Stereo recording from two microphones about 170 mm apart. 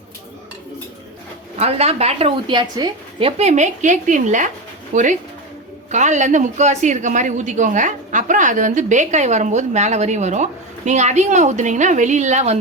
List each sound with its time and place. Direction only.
1.5 s a woman's voice: 40° right (ahead or behind)